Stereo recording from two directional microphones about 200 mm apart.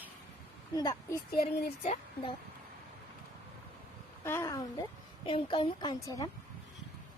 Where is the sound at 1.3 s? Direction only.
50° left (ahead or behind).